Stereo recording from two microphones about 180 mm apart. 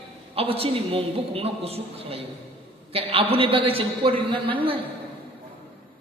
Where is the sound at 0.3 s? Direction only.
30° right (ahead or behind).